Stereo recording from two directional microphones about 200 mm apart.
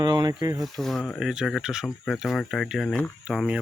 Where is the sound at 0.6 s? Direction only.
Centre (ahead or behind).